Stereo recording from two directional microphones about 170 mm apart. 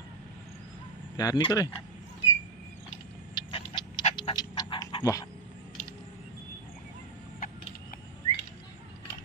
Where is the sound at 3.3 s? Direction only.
30° left (ahead or behind).